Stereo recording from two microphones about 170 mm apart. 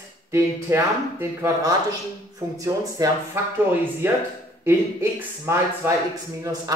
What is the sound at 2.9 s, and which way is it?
Speech, 20° right (ahead or behind).